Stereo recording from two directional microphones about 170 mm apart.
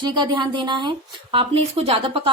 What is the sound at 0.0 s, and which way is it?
A woman's voice, 25° right (ahead or behind).